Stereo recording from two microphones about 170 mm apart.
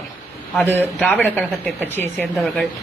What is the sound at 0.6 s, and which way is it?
A woman's voice, 10° left (ahead or behind).